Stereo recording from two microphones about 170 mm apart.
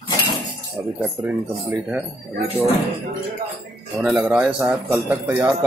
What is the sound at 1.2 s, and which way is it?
Speech, 10° right (ahead or behind).